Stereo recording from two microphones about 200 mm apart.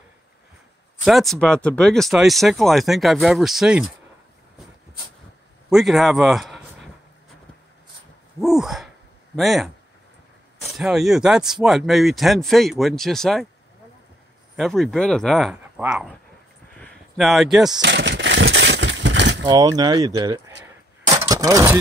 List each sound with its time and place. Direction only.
1.0 s speech: centre (ahead or behind)
5.7 s a man's voice: centre (ahead or behind)
8.4 s speech: centre (ahead or behind)
14.6 s speech: centre (ahead or behind)
16.8 s a sound: centre (ahead or behind)
17.8 s vehicle: 60° right (ahead or behind)
19.4 s speech: 20° right (ahead or behind)
21.2 s a sound: 20° right (ahead or behind)